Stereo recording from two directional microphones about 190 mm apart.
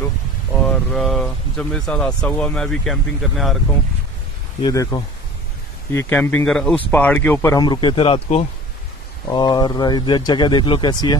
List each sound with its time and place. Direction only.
0.9 s speech: centre (ahead or behind)
4.6 s speech: 20° left (ahead or behind)
9.3 s speech: 20° left (ahead or behind)